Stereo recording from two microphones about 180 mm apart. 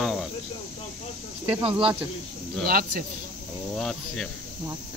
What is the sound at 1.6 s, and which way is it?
Speech, 30° right (ahead or behind).